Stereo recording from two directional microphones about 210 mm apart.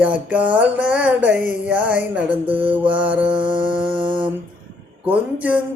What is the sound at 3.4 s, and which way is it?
Music, 25° right (ahead or behind).